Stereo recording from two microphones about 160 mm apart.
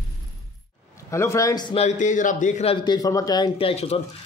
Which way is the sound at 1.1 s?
20° left (ahead or behind).